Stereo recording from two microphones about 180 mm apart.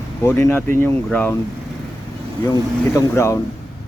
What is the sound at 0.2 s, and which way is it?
Speech, 15° left (ahead or behind).